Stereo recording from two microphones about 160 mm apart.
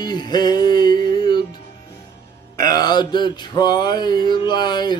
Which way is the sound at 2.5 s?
25° left (ahead or behind).